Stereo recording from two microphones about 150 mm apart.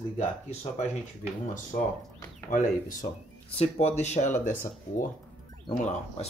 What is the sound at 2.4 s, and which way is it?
Speech, 60° left (ahead or behind).